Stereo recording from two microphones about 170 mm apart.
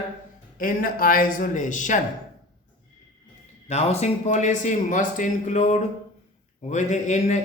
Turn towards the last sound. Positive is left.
turn(degrees=45)  # may be behind; listen again after turning